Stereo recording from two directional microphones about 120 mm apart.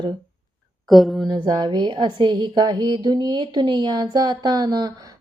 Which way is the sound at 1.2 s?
35° right (ahead or behind).